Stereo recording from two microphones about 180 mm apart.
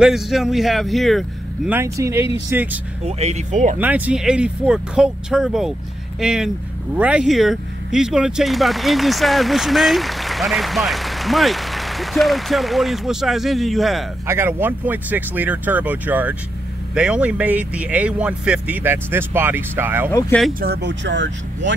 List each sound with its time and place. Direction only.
0.0 s speech: centre (ahead or behind)
1.7 s speech: 15° right (ahead or behind)
3.1 s speech: 35° right (ahead or behind)
3.7 s speech: 10° right (ahead or behind)
14.2 s speech: 15° right (ahead or behind)
20.1 s speech: 15° left (ahead or behind)
20.6 s speech: 65° right (ahead or behind); by 21.7 s 80° right